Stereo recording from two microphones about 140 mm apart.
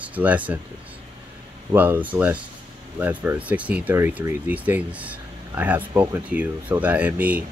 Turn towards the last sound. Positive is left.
turn(degrees=-10)  # may be behind; listen again after turning